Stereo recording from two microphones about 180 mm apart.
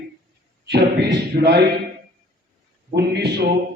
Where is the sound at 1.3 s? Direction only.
55° right (ahead or behind).